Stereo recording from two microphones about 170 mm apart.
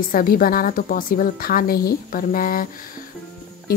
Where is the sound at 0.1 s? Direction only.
60° left (ahead or behind).